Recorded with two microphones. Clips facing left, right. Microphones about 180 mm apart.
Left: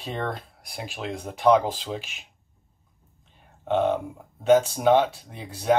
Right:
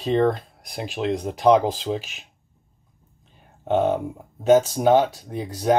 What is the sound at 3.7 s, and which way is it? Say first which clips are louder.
Speech: right 2 dB; 45° right (ahead or behind).